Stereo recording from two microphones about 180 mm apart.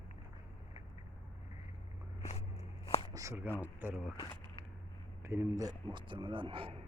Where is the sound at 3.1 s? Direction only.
15° right (ahead or behind).